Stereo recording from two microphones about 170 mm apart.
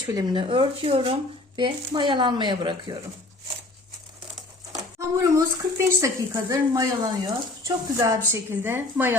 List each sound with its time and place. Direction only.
0.1 s speech: 25° right (ahead or behind)
4.8 s speech: 20° right (ahead or behind)